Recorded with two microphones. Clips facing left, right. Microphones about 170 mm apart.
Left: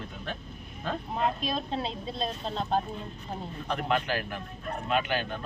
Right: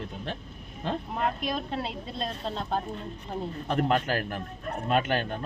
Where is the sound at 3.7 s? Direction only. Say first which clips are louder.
Right 3 dB; 45° right (ahead or behind).